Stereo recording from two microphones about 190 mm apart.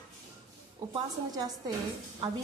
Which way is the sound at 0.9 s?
20° right (ahead or behind).